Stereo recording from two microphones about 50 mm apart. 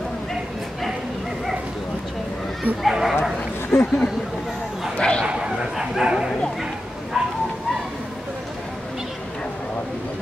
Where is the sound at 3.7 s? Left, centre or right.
Left.